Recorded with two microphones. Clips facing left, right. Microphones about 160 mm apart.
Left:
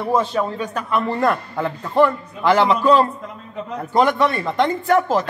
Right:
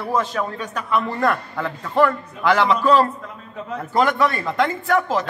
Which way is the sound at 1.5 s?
25° left (ahead or behind).